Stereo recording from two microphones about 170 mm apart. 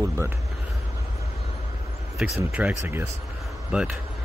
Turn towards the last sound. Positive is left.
turn(degrees=-5)  # may be behind; listen again after turning